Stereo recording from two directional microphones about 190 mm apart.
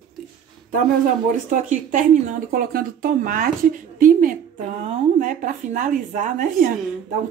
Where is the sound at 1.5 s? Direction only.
45° right (ahead or behind).